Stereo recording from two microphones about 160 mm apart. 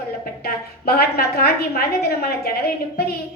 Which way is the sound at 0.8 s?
80° left.